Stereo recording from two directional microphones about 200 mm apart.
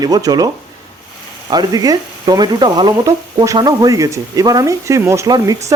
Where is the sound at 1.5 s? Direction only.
20° right (ahead or behind).